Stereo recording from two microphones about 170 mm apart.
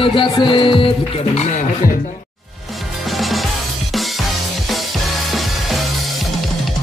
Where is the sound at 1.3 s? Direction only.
45° left (ahead or behind).